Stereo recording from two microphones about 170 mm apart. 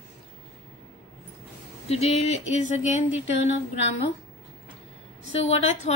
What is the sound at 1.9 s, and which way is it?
A woman's voice, 40° left (ahead or behind).